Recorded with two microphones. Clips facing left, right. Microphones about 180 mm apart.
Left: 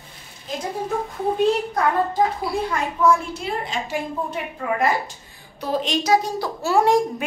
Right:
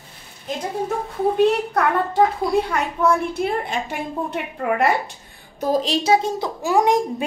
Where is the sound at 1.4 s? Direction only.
70° right (ahead or behind).